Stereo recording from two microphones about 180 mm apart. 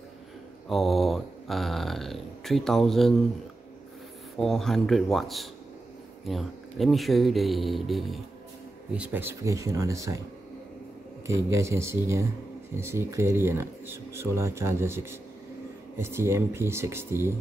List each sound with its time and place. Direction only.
0.7 s speech: centre (ahead or behind)
4.4 s speech: centre (ahead or behind); by 10.2 s 15° right (ahead or behind)
11.2 s speech: 15° right (ahead or behind)